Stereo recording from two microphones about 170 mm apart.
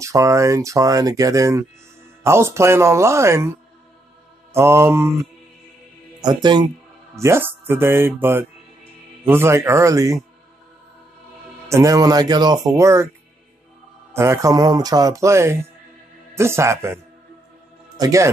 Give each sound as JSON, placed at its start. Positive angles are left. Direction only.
{"t": 0.0, "sound": "speech", "side_deg": -20}
{"t": 4.6, "sound": "speech", "side_deg": -15}
{"t": 6.2, "sound": "speech", "side_deg": -25}
{"t": 11.7, "sound": "speech", "side_deg": -20}
{"t": 14.1, "sound": "a man's voice", "side_deg": -15}